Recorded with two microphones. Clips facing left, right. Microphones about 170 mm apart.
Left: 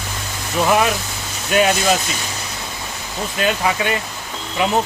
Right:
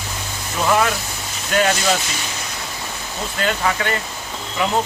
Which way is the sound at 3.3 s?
15° left (ahead or behind).